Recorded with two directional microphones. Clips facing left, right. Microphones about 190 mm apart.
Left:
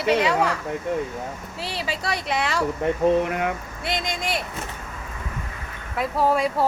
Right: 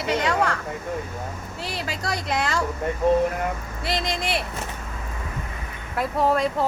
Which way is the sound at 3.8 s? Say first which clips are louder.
Right 1 dB; centre (ahead or behind).